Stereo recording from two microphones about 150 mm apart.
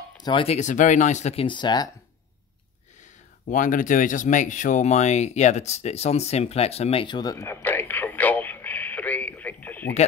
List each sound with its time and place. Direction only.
0.2 s speech: 35° left (ahead or behind)
0.6 s speech: 55° left (ahead or behind); by 1.9 s 30° left (ahead or behind)
3.4 s speech: 60° left (ahead or behind); by 9.9 s 10° left (ahead or behind)